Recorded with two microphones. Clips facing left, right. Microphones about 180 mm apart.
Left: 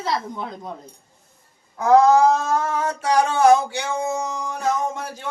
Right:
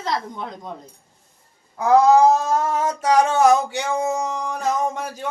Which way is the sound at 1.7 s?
15° right (ahead or behind).